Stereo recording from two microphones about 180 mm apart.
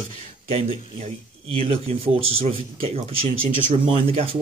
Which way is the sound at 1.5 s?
30° right (ahead or behind).